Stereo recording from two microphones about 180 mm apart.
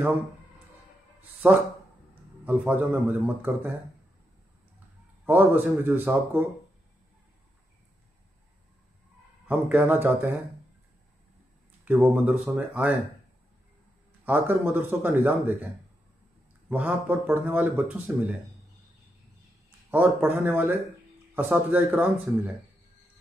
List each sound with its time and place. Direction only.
1.4 s speech: 10° right (ahead or behind)
5.2 s speech: 10° right (ahead or behind)
9.5 s speech: 10° right (ahead or behind)
11.8 s speech: 10° right (ahead or behind)
14.2 s speech: 10° right (ahead or behind)
16.6 s speech: 10° right (ahead or behind)
19.9 s speech: 10° right (ahead or behind)